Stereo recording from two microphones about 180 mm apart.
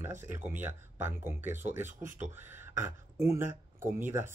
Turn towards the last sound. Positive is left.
turn(degrees=-10)  # may be behind; listen again after turning